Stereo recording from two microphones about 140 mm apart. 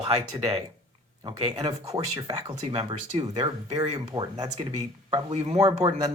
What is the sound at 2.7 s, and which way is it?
Speech, 45° right (ahead or behind).